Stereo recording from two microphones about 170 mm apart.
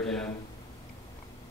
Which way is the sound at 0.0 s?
5° left (ahead or behind).